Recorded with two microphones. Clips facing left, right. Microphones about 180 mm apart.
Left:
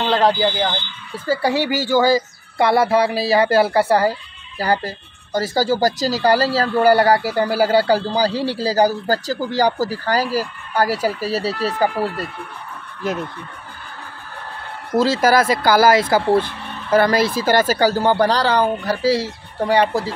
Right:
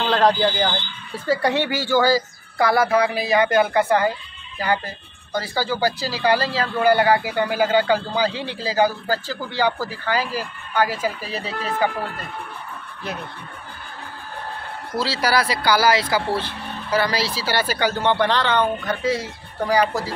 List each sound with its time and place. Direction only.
0.0 s speech: 5° left (ahead or behind); by 12.3 s 35° left (ahead or behind)
15.0 s speech: 45° left (ahead or behind); by 20.2 s 30° left (ahead or behind)